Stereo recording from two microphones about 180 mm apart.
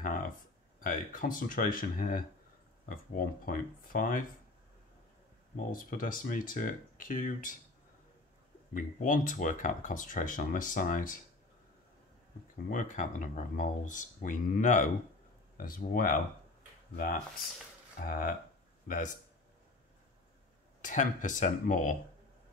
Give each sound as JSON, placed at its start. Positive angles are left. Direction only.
{"t": 0.0, "sound": "a sound", "side_deg": 50}
{"t": 0.7, "sound": "speech", "side_deg": 50}
{"t": 5.6, "sound": "speech", "side_deg": 50}
{"t": 8.7, "sound": "speech", "side_deg": 45}
{"t": 12.5, "sound": "speech", "side_deg": 45}
{"t": 18.0, "sound": "speech", "side_deg": 60}
{"t": 18.9, "sound": "speech", "side_deg": 45}
{"t": 20.8, "sound": "speech", "side_deg": 45}